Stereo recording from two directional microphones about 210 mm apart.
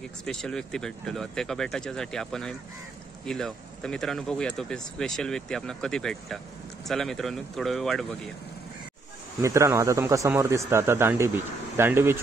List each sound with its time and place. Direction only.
0.2 s speech: 5° left (ahead or behind)
9.4 s a man's voice: 15° right (ahead or behind)